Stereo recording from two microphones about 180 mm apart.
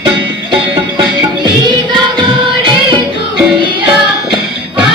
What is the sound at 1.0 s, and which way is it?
Music, 25° right (ahead or behind).